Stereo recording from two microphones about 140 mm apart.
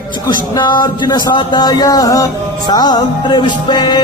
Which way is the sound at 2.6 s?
30° left (ahead or behind).